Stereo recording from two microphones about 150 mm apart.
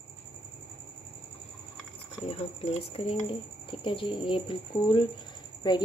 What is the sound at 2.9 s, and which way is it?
Speech, 40° left (ahead or behind).